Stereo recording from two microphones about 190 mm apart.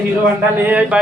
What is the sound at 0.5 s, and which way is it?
Speech, 10° right (ahead or behind).